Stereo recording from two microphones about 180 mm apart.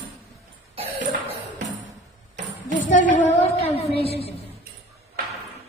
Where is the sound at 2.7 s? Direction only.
45° left (ahead or behind).